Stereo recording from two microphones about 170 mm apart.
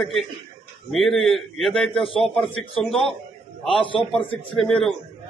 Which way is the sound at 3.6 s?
30° left (ahead or behind).